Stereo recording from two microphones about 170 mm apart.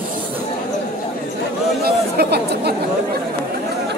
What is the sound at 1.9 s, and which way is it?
Chatter, 70° right (ahead or behind).